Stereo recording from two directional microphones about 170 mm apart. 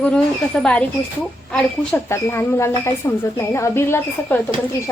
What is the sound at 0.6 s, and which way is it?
Speech, 10° left (ahead or behind).